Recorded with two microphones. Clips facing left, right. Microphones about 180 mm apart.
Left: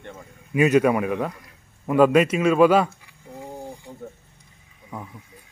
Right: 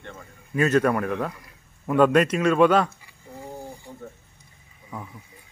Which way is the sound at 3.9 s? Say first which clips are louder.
Left 1 dB; 20° left (ahead or behind).